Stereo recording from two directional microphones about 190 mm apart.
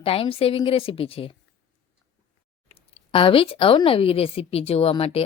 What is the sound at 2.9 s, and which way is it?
A woman's voice, 30° left (ahead or behind).